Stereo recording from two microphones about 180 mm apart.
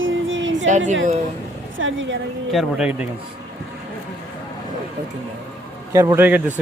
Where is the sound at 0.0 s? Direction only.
90° right.